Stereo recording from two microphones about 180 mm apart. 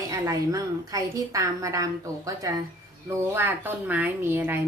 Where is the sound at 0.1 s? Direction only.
20° right (ahead or behind).